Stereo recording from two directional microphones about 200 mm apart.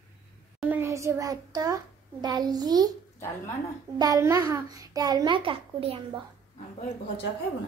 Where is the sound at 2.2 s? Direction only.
20° right (ahead or behind).